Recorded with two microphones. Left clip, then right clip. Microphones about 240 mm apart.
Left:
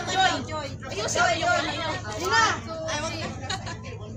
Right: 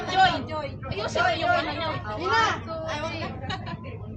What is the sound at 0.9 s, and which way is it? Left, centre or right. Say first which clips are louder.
Speech: left 2 dB; centre.